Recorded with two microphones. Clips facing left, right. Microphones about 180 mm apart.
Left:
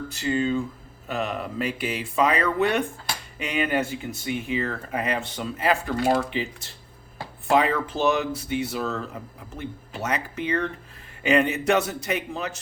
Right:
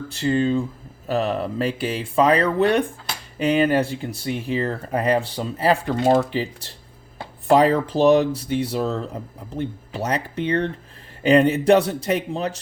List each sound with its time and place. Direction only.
0.1 s speech: 30° right (ahead or behind)